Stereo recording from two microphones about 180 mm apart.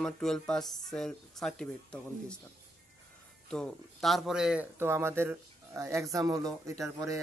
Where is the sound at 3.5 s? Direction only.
Centre (ahead or behind).